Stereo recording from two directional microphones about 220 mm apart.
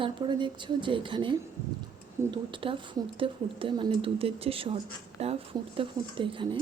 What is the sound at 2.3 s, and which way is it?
Speech, 25° right (ahead or behind).